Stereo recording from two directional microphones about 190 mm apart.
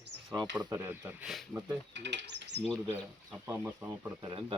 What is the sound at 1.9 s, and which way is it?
Speech, 65° right (ahead or behind).